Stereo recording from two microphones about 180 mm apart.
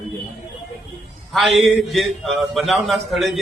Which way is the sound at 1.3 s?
Centre (ahead or behind).